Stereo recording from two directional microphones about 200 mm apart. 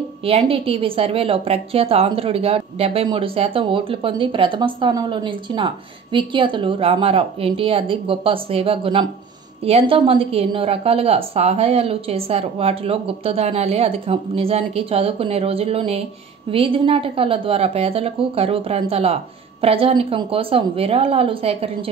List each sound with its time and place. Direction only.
0.2 s a woman's voice: 30° right (ahead or behind)